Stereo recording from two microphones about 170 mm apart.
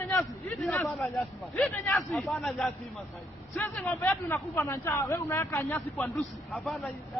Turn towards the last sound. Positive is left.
turn(degrees=5)  # may be behind; listen again after turning